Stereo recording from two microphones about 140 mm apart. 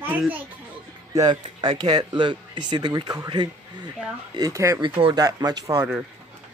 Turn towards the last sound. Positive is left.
turn(degrees=-20)  # may be behind; listen again after turning